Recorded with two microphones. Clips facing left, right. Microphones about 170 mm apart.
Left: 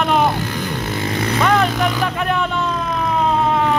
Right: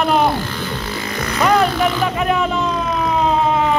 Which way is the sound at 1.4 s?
Centre (ahead or behind).